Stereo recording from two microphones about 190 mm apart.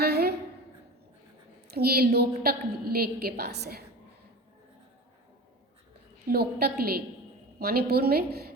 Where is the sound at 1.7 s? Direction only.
55° right (ahead or behind).